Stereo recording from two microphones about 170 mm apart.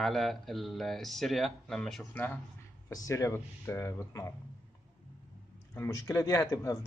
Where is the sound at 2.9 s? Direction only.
20° left (ahead or behind).